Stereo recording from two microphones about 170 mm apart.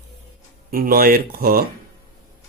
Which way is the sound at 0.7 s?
60° right (ahead or behind).